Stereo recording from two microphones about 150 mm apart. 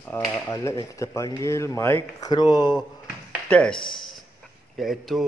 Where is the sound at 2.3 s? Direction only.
25° left (ahead or behind).